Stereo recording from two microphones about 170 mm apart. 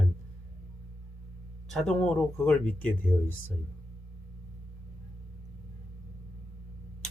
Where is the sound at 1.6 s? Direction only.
5° left (ahead or behind).